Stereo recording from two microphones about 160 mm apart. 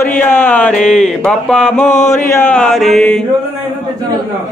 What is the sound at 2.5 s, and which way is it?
Chant, 5° left (ahead or behind).